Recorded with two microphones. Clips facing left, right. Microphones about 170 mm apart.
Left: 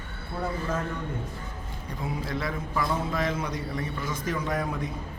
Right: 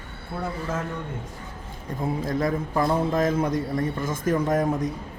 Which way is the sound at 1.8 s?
45° right (ahead or behind).